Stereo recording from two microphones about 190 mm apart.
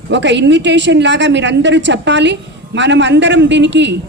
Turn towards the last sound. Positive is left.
turn(degrees=-70)  # may be behind; listen again after turning